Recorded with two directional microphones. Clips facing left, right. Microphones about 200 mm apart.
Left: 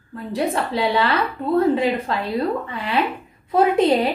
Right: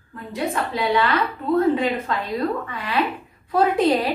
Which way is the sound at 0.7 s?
30° left (ahead or behind).